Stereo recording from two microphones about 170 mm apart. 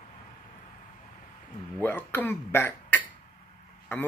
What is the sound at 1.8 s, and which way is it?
Speech, 10° left (ahead or behind).